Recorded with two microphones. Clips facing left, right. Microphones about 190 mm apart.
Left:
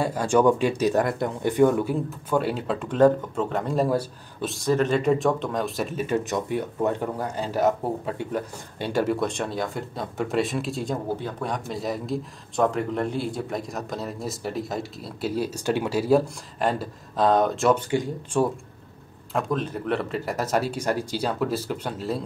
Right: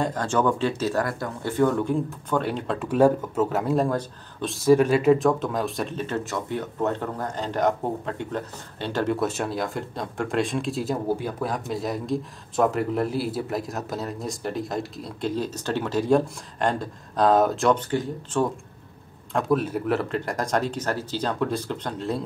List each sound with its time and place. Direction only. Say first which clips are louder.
0.0 s a man's voice: left 3 dB; 10° left (ahead or behind)
2.9 s a man's voice: even; 10° right (ahead or behind); by 18.5 s 10° left (ahead or behind)
19.3 s a man's voice: right 3 dB; 5° right (ahead or behind)